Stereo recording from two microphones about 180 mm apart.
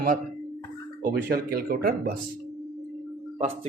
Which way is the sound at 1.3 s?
55° right (ahead or behind).